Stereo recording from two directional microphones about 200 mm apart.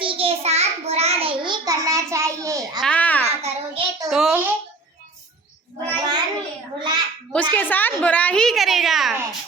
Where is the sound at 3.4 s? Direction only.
25° right (ahead or behind).